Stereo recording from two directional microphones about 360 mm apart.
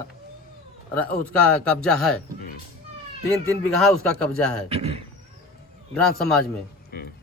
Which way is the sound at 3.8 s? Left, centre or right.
Centre.